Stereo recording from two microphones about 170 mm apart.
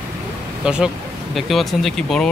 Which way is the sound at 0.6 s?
5° right (ahead or behind).